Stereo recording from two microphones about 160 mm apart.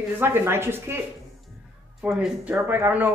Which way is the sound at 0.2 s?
15° right (ahead or behind).